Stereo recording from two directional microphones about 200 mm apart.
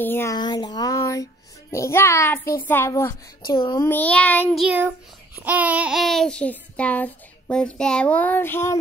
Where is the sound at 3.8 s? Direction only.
10° left (ahead or behind).